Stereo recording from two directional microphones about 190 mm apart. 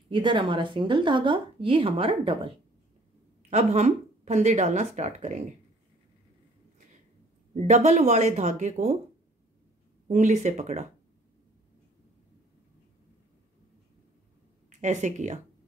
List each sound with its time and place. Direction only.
0.1 s speech: 25° right (ahead or behind)
7.5 s speech: 40° right (ahead or behind)
10.0 s speech: 40° right (ahead or behind)
14.7 s speech: 40° right (ahead or behind)